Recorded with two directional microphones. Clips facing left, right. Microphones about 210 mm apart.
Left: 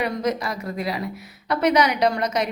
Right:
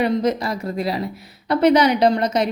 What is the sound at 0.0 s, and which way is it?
A woman's voice, 30° right (ahead or behind).